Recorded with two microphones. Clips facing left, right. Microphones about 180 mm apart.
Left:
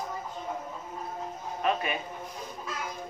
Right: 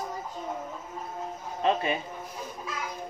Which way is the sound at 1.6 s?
25° right (ahead or behind).